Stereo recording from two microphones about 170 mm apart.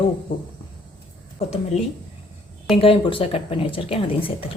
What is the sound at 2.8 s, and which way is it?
Speech, 30° left (ahead or behind).